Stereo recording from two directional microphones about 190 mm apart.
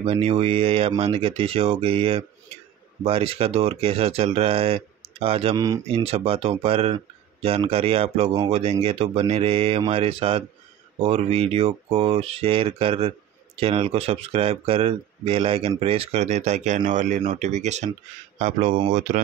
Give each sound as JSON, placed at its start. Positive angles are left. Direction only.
{"t": 0.0, "sound": "speech", "side_deg": -30}